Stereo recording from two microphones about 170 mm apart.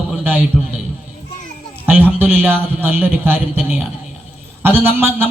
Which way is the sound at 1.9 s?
10° right (ahead or behind).